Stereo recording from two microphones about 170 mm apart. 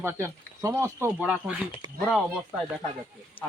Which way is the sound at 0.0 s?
15° right (ahead or behind).